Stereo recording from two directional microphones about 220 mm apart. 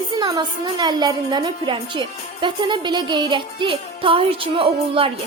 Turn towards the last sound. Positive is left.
turn(degrees=-25)  # may be behind; listen again after turning